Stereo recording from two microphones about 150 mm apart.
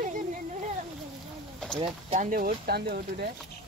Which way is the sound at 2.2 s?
65° right (ahead or behind).